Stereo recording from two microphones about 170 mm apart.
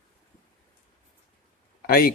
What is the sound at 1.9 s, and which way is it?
Speech, 60° left (ahead or behind).